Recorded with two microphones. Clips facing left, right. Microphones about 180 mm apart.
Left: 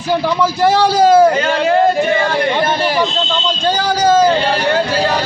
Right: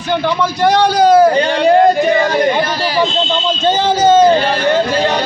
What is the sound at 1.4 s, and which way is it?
Speech, 35° right (ahead or behind).